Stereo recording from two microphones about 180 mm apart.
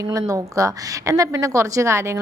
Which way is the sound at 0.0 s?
20° right (ahead or behind).